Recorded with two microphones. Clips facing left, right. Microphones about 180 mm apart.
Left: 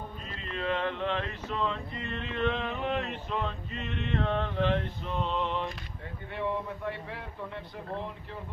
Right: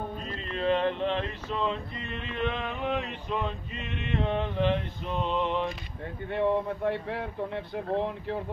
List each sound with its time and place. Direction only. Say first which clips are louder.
0.6 s a sound: right 5 dB; 30° right (ahead or behind)
2.1 s music: left 1 dB; 10° right (ahead or behind)
3.8 s male singing: right 1 dB; 10° right (ahead or behind)
6.3 s speech: right 6 dB; 60° right (ahead or behind)